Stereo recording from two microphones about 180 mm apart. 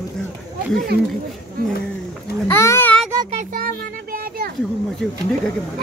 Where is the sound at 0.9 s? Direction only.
60° right (ahead or behind).